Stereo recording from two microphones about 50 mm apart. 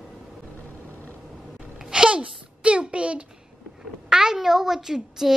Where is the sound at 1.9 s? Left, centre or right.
Centre.